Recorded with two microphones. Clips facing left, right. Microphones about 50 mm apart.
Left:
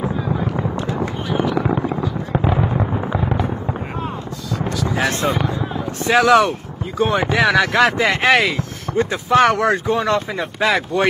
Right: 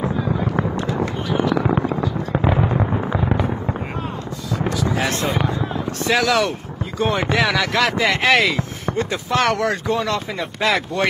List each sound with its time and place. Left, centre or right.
0.1 s fireworks: centre
0.9 s a sound: centre
2.0 s fireworks: centre
4.8 s a sound: centre
6.1 s speech: centre
7.0 s speech: centre
7.5 s speech: left
8.9 s speech: centre
10.1 s speech: centre